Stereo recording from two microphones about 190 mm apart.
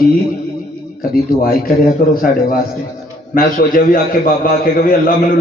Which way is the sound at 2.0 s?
50° left (ahead or behind).